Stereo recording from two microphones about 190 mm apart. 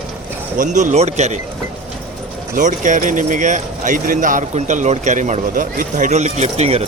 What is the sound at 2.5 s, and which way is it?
Speech, 40° right (ahead or behind).